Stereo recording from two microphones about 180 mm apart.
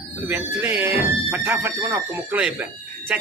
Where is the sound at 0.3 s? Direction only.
10° right (ahead or behind).